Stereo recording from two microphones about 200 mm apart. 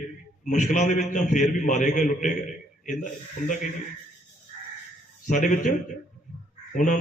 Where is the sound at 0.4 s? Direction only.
40° left (ahead or behind).